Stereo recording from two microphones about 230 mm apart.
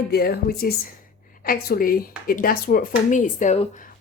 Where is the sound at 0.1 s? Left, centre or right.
Left.